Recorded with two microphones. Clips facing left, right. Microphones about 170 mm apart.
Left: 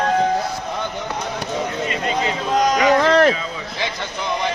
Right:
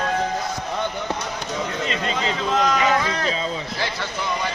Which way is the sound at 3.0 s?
75° left (ahead or behind).